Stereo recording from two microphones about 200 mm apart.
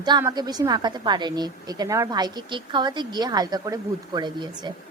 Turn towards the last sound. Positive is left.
turn(degrees=-20)  # may be behind; listen again after turning